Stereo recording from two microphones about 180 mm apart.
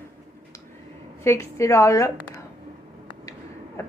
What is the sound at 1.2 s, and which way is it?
Speech, 15° left (ahead or behind).